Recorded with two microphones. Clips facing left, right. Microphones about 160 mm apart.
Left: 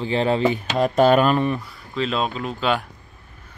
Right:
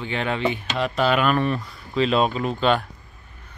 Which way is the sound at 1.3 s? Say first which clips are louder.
Left 1 dB; 15° left (ahead or behind).